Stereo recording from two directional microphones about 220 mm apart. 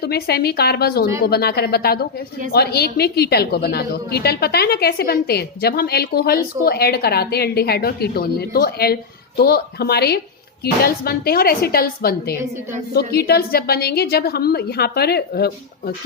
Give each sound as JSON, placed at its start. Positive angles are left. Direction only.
{"t": 0.0, "sound": "a woman's voice", "side_deg": 45}